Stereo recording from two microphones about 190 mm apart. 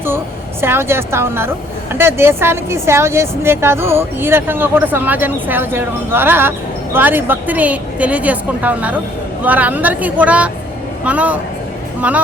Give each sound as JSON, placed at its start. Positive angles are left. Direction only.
{"t": 0.6, "sound": "a woman's voice", "side_deg": -10}